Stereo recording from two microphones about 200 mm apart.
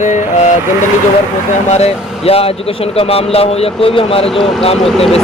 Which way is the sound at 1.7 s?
30° left (ahead or behind).